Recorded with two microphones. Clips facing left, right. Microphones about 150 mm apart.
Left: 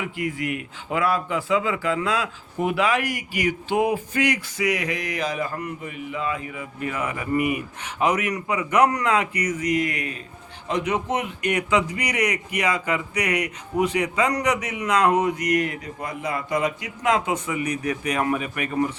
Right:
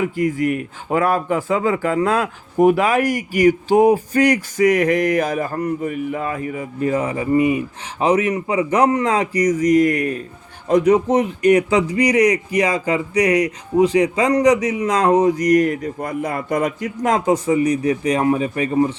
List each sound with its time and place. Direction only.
0.0 s a man's voice: 40° right (ahead or behind)